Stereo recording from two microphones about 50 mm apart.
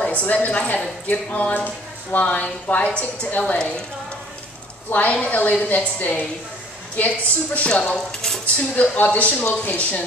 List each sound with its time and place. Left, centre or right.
0.0 s a woman's voice: left
4.8 s a woman's voice: left
7.9 s cutlery: centre
8.7 s a woman's voice: left